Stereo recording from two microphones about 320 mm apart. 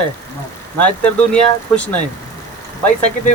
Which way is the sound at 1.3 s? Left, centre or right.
Centre.